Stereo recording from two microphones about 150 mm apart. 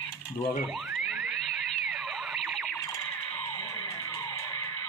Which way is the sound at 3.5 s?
25° left (ahead or behind).